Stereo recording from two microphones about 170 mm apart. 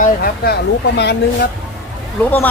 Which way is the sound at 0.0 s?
60° left (ahead or behind).